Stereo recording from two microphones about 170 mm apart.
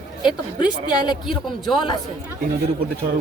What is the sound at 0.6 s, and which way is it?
Speech, 25° left (ahead or behind).